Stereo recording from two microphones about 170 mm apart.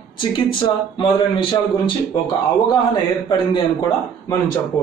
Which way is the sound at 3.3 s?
25° left (ahead or behind).